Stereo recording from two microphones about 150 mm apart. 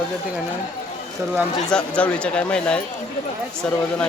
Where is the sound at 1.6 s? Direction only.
5° left (ahead or behind).